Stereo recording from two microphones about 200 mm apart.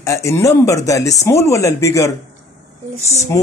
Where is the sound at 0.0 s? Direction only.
15° left (ahead or behind).